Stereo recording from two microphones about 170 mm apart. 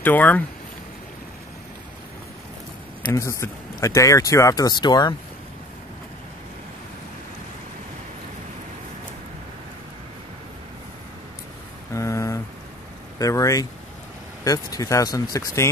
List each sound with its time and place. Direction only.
0.0 s speech: 10° left (ahead or behind)
3.1 s speech: 15° left (ahead or behind)
11.9 s a sound: 15° left (ahead or behind)
13.2 s speech: 20° left (ahead or behind)